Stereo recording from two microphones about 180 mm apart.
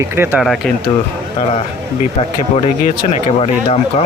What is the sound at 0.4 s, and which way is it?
Speech, centre (ahead or behind).